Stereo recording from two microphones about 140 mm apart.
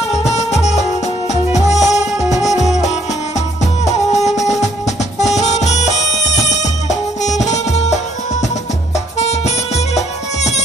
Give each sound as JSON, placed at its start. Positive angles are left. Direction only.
{"t": 0.4, "sound": "music", "side_deg": 50}